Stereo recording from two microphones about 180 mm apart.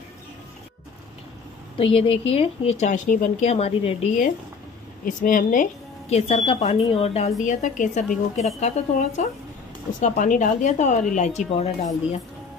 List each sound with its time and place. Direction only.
1.8 s speech: 30° left (ahead or behind)